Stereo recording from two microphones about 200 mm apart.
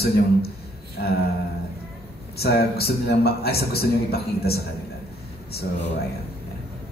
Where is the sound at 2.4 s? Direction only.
50° left (ahead or behind).